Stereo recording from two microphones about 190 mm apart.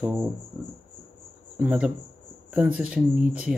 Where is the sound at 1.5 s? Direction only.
5° right (ahead or behind).